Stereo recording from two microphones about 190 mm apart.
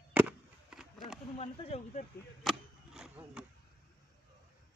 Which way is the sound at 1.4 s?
35° left (ahead or behind).